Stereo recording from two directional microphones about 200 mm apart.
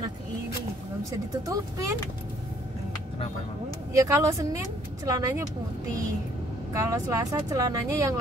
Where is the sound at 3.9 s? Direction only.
15° right (ahead or behind).